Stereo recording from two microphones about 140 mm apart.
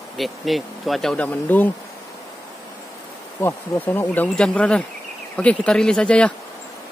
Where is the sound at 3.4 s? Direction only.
15° left (ahead or behind).